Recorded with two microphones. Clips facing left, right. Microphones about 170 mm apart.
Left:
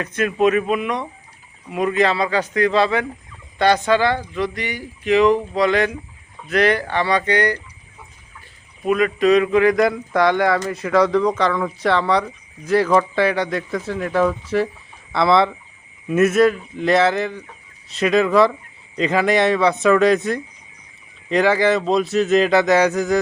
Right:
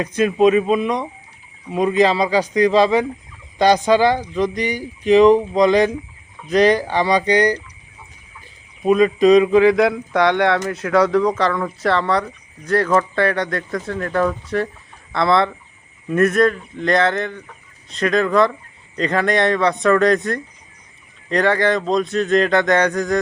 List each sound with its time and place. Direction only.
0.0 s a man's voice: 15° right (ahead or behind)
0.3 s a man's voice: 25° right (ahead or behind)
8.8 s speech: 20° right (ahead or behind)
9.6 s speech: centre (ahead or behind)